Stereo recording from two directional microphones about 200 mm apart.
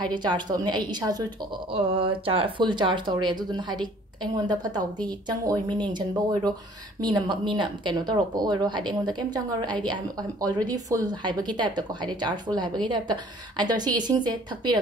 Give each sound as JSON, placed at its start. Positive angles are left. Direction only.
{"t": 0.0, "sound": "speech", "side_deg": -20}